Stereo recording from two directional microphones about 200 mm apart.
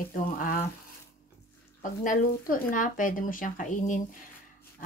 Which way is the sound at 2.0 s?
40° left (ahead or behind).